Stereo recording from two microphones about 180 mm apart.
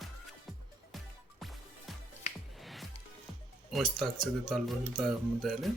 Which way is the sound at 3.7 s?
Centre (ahead or behind).